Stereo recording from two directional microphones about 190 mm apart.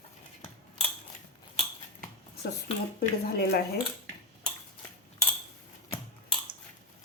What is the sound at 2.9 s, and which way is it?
Speech, 55° left (ahead or behind).